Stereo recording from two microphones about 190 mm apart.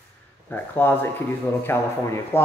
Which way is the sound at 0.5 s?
10° left (ahead or behind).